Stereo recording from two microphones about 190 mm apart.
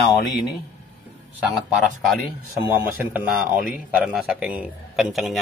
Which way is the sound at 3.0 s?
10° right (ahead or behind).